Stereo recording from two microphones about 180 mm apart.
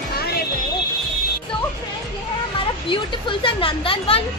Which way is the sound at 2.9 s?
30° left (ahead or behind).